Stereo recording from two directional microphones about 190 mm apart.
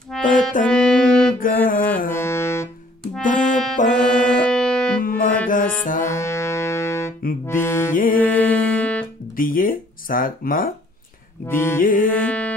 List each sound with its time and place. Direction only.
0.1 s music: 5° left (ahead or behind)
1.4 s music: 45° left (ahead or behind)
2.1 s music: 15° left (ahead or behind)
3.3 s music: 40° left (ahead or behind)
4.3 s music: 5° left (ahead or behind)
5.0 s music: 50° left (ahead or behind)
6.0 s music: 15° left (ahead or behind)
7.9 s music: 45° left (ahead or behind)
8.3 s music: 10° left (ahead or behind)
9.4 s a sound: 45° left (ahead or behind)
11.4 s music: 10° left (ahead or behind)
11.8 s music: 45° left (ahead or behind)
12.1 s carnatic music: 10° left (ahead or behind)